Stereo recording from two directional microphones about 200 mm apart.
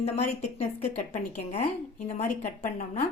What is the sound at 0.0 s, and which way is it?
A woman's voice, 30° left (ahead or behind).